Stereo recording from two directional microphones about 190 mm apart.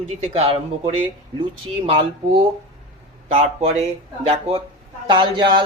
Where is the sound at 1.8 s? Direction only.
30° right (ahead or behind).